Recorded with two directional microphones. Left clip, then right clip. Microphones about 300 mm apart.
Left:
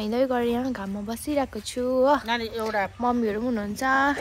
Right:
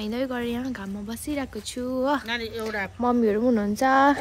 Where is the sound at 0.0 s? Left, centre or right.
Centre.